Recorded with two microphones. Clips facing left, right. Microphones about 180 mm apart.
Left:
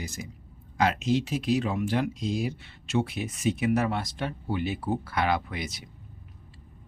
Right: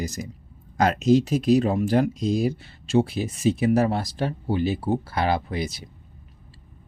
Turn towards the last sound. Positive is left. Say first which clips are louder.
# right 7 dB
turn(degrees=-30)  # may be behind; listen again after turning